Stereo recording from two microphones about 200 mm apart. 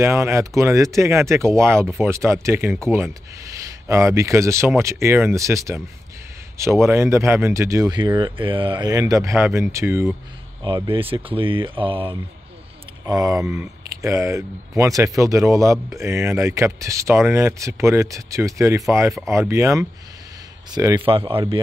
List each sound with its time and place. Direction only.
0.0 s speech: 15° right (ahead or behind)
10.6 s speech: 25° right (ahead or behind)
13.0 s speech: 15° right (ahead or behind)